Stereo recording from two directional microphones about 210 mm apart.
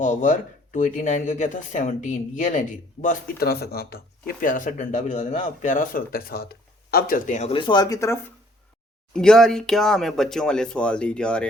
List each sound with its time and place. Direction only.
0.0 s speech: 35° left (ahead or behind); by 8.2 s 15° left (ahead or behind)
9.1 s speech: 5° left (ahead or behind)